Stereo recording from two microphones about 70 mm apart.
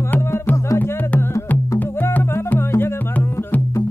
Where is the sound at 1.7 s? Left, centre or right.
Left.